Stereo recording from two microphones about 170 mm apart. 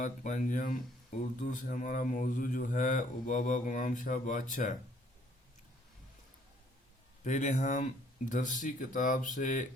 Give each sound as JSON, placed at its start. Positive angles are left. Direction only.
{"t": 0.0, "sound": "speech", "side_deg": 50}
{"t": 7.3, "sound": "speech", "side_deg": 45}